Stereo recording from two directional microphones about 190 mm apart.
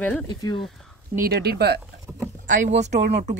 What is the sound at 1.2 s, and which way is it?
Speech, 60° right (ahead or behind).